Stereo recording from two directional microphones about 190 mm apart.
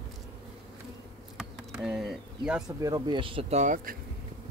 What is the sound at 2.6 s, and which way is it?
Speech, 20° right (ahead or behind).